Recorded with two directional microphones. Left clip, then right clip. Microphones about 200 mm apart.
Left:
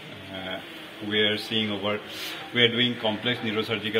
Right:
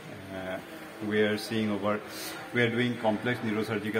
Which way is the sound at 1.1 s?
5° right (ahead or behind).